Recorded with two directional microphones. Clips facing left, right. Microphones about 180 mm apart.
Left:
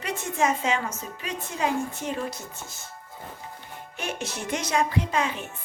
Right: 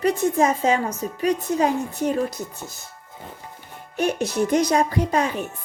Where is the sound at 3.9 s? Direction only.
40° right (ahead or behind).